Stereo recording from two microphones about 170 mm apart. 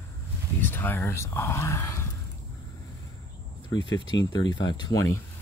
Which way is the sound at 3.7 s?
25° left (ahead or behind).